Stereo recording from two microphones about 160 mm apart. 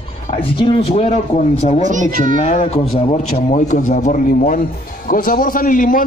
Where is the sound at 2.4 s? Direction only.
40° left (ahead or behind).